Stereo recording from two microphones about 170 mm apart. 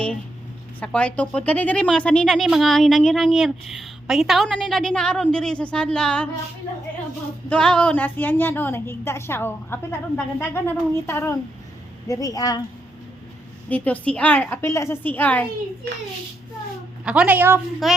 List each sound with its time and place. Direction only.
0.8 s speech: 10° left (ahead or behind)
7.5 s a woman's voice: 5° left (ahead or behind); by 12.5 s 20° left (ahead or behind)
13.7 s a woman's voice: 10° left (ahead or behind)
17.1 s speech: 10° right (ahead or behind)
17.8 s speech: centre (ahead or behind)